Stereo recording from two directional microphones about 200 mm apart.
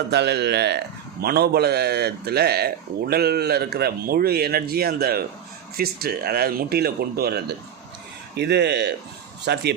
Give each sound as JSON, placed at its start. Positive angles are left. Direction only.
{"t": 0.1, "sound": "speech", "side_deg": -55}